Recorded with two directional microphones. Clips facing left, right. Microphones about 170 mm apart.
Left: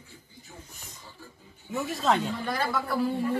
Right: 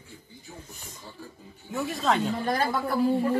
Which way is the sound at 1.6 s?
Centre (ahead or behind).